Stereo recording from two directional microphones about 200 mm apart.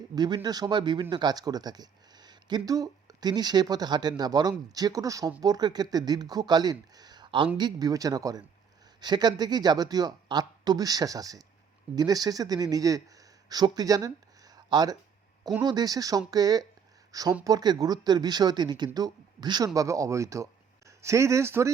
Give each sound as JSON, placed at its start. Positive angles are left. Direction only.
{"t": 0.2, "sound": "speech", "side_deg": -20}